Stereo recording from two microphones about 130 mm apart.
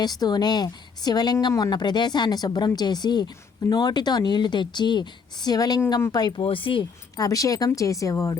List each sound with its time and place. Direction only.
0.0 s a woman's voice: 30° left (ahead or behind)
6.4 s speech: 45° left (ahead or behind)
7.2 s speech: 25° left (ahead or behind)